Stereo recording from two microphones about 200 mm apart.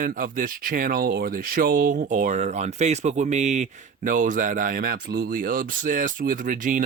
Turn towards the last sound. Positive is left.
turn(degrees=-40)  # may be behind; listen again after turning